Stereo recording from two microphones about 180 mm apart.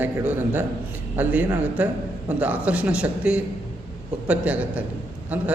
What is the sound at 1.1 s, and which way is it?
Speech, 10° right (ahead or behind).